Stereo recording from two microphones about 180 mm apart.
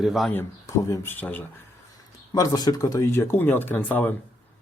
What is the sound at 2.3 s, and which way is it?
Speech, 20° left (ahead or behind).